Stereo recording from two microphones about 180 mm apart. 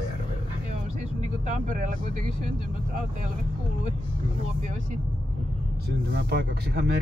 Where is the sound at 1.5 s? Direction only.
45° right (ahead or behind).